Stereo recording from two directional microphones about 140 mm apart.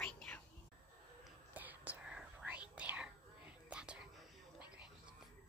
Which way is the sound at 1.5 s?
10° right (ahead or behind).